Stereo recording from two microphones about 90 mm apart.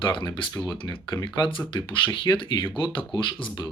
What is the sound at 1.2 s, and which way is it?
Speech, 60° left (ahead or behind).